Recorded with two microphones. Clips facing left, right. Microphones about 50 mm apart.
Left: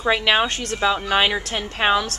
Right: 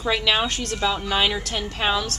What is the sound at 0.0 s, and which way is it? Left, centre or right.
A woman's voice, left.